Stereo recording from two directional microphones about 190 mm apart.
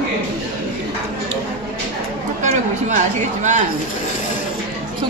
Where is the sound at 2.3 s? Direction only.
40° right (ahead or behind).